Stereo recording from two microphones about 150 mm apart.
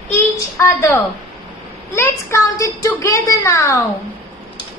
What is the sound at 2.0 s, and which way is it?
A woman's voice, 20° left (ahead or behind).